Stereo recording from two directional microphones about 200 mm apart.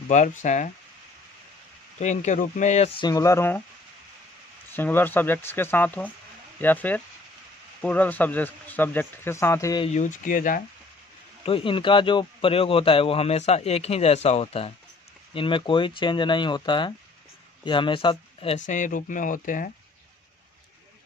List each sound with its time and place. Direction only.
0.1 s speech: 40° left (ahead or behind)
2.0 s speech: 35° left (ahead or behind)
3.0 s speech: 20° left (ahead or behind)
4.7 s speech: 10° left (ahead or behind)
9.9 s speech: 40° left (ahead or behind)
11.4 s speech: 25° left (ahead or behind)
18.7 s speech: 40° left (ahead or behind)